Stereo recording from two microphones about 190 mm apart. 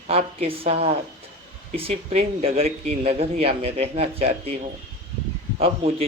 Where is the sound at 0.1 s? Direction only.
30° right (ahead or behind).